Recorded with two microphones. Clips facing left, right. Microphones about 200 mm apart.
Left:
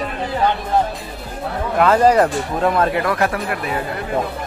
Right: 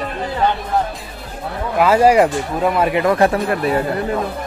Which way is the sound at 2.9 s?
20° right (ahead or behind).